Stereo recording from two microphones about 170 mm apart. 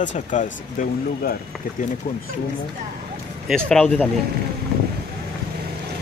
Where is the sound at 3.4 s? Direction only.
5° left (ahead or behind).